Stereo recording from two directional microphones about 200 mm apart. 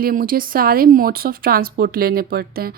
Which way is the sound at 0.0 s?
45° right (ahead or behind).